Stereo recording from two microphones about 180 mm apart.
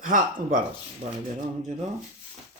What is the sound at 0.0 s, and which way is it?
Speech, 50° right (ahead or behind).